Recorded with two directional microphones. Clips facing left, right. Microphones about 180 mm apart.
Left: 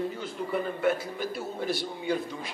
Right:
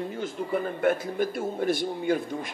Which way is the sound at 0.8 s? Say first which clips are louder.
Right 5 dB; 50° right (ahead or behind).